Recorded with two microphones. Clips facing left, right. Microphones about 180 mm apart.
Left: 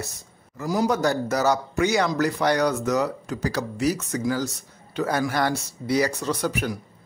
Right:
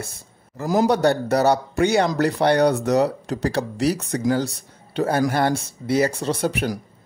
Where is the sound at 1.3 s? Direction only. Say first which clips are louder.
Right 4 dB; 35° right (ahead or behind).